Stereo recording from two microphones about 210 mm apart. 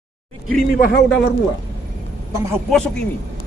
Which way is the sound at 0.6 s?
45° left (ahead or behind).